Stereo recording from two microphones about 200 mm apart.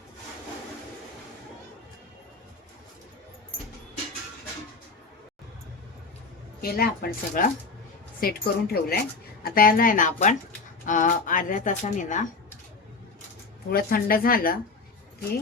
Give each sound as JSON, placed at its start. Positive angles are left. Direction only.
{"t": 6.6, "sound": "speech", "side_deg": 50}
{"t": 13.7, "sound": "speech", "side_deg": 50}